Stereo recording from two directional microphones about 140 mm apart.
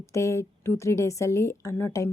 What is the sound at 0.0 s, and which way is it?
A woman's voice, 20° left (ahead or behind).